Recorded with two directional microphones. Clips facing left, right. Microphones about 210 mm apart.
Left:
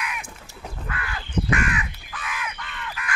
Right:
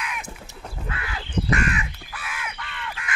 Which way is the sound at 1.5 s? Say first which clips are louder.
Right 2 dB; 35° right (ahead or behind).